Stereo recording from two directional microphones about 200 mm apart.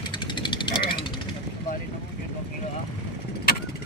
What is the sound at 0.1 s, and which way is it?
Jackhammer, 25° left (ahead or behind).